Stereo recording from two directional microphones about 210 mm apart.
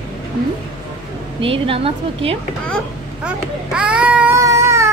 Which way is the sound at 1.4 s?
25° right (ahead or behind).